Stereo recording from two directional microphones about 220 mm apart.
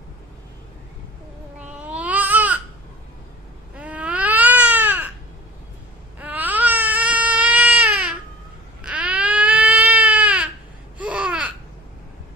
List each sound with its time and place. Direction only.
1.7 s baby cry: 5° right (ahead or behind)
3.7 s baby cry: 5° right (ahead or behind)
6.1 s baby cry: 5° right (ahead or behind)
11.0 s babbling: 5° right (ahead or behind)